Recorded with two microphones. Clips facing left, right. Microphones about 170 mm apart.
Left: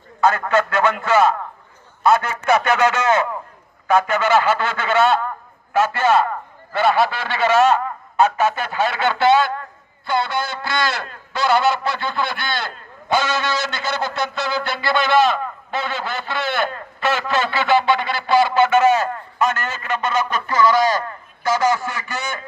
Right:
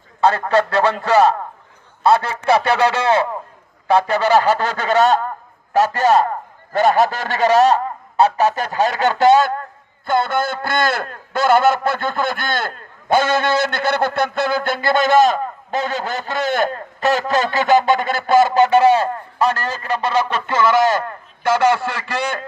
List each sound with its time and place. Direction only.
0.2 s a man's voice: 30° right (ahead or behind)